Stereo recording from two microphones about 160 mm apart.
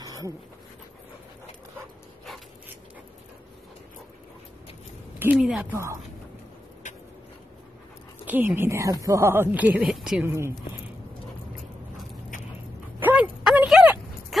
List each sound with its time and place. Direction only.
0.0 s dog: 25° right (ahead or behind)
5.2 s speech: 5° right (ahead or behind)
8.3 s speech: 10° right (ahead or behind)
10.2 s speech: 15° right (ahead or behind)
13.0 s a sound: 10° right (ahead or behind)